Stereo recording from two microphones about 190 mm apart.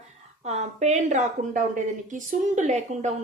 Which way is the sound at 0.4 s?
35° right (ahead or behind).